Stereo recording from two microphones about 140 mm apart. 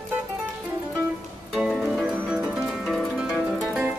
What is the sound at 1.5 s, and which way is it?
Music, centre (ahead or behind).